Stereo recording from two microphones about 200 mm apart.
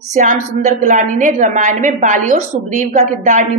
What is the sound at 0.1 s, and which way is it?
A woman's voice, 40° right (ahead or behind).